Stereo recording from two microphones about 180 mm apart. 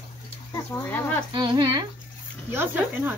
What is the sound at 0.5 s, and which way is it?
Speech, 10° left (ahead or behind).